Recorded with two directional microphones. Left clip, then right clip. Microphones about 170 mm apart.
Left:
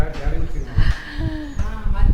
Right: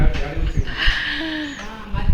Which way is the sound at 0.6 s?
5° left (ahead or behind).